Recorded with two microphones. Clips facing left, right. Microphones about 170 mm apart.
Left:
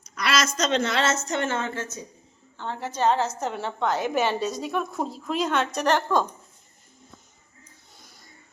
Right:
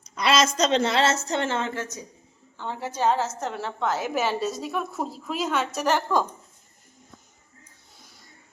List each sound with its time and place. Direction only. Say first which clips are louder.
0.0 s a woman's voice: right 4 dB; 25° right (ahead or behind)
2.6 s a woman's voice: left 1 dB; 10° right (ahead or behind)